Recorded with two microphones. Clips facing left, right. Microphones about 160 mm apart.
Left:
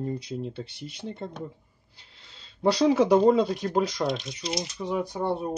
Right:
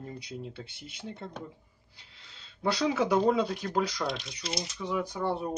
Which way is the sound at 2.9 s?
35° left (ahead or behind).